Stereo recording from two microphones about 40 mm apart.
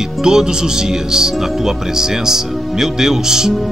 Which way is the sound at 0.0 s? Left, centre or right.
Centre.